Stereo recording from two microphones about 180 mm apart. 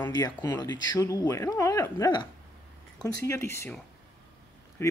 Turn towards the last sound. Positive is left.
turn(degrees=15)  # may be behind; listen again after turning